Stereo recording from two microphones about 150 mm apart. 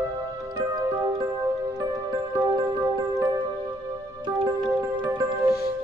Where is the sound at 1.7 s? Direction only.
25° right (ahead or behind).